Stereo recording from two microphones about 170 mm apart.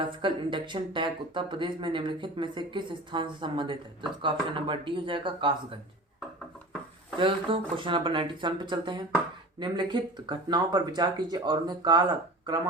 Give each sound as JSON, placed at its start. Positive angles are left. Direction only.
{"t": 0.0, "sound": "speech", "side_deg": -30}
{"t": 7.2, "sound": "speech", "side_deg": -30}